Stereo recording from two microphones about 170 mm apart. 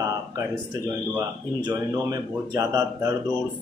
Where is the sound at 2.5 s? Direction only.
20° right (ahead or behind).